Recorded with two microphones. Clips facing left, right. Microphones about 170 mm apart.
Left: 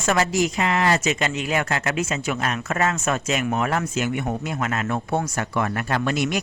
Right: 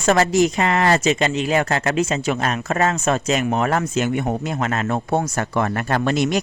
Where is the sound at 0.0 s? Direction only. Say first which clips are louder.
Right 5 dB; 35° right (ahead or behind).